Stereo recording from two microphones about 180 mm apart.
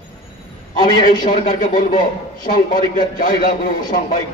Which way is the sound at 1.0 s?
45° left (ahead or behind).